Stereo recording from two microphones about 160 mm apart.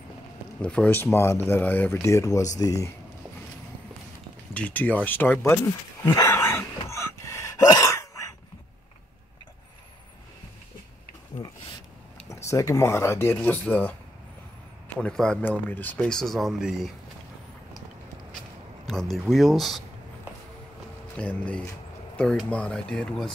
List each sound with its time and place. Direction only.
0.6 s speech: 5° left (ahead or behind)
4.6 s speech: 10° left (ahead or behind)
6.0 s a sound: 20° left (ahead or behind)
11.4 s a sound: 20° left (ahead or behind)
12.3 s speech: 20° left (ahead or behind)
15.0 s speech: 5° left (ahead or behind)
18.9 s speech: centre (ahead or behind)
21.2 s speech: 5° left (ahead or behind)